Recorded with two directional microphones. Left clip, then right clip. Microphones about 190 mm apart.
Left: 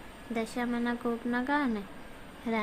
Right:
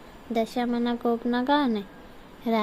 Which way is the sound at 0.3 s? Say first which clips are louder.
Right 7 dB; 20° right (ahead or behind).